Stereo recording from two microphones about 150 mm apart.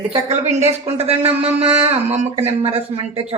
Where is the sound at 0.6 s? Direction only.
45° right (ahead or behind).